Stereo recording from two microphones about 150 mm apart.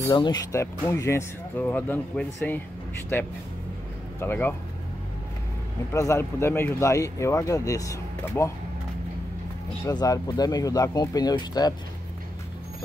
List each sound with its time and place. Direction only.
0.1 s speech: 30° left (ahead or behind)
0.5 s speech: 20° left (ahead or behind)
4.2 s speech: 15° left (ahead or behind)
5.9 s speech: 20° left (ahead or behind)
9.8 s speech: 25° left (ahead or behind)